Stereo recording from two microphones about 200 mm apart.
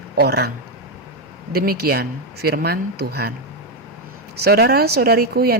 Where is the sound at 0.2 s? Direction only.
55° right (ahead or behind).